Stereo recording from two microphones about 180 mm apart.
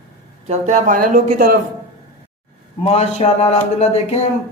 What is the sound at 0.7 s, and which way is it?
Speech, 45° right (ahead or behind).